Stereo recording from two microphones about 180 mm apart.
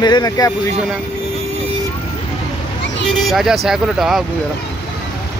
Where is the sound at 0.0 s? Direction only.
20° left (ahead or behind).